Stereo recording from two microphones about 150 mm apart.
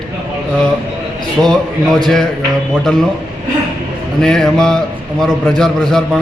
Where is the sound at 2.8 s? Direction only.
5° left (ahead or behind).